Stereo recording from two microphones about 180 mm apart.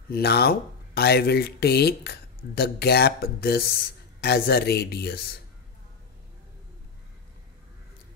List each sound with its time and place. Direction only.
0.1 s speech: 60° left (ahead or behind)